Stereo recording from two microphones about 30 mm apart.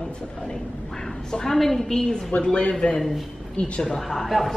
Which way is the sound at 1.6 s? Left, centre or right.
Centre.